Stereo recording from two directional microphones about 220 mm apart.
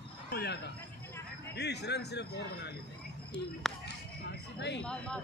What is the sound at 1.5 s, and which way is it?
A man's voice, 50° left (ahead or behind).